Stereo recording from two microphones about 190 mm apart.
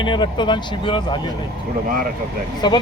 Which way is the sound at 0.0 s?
25° left (ahead or behind).